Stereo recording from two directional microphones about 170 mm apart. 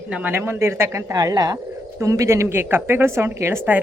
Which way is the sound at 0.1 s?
10° right (ahead or behind).